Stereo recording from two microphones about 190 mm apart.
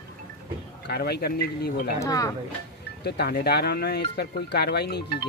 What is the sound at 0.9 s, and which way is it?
Speech, 55° left (ahead or behind).